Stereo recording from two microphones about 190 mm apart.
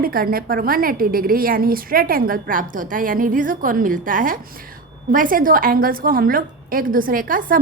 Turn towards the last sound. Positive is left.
turn(degrees=-50)  # may be behind; listen again after turning